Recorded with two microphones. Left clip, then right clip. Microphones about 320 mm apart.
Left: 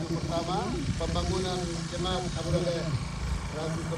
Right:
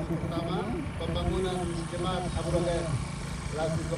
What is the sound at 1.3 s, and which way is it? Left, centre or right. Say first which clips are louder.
Speech: even; centre.